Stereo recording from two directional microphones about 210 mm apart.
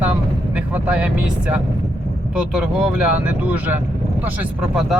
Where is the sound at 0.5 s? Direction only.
5° right (ahead or behind).